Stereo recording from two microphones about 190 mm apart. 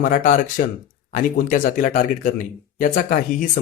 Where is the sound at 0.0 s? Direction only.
45° left (ahead or behind).